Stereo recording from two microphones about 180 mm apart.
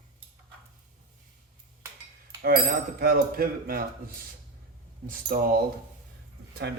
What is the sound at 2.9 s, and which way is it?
Speech, 55° right (ahead or behind).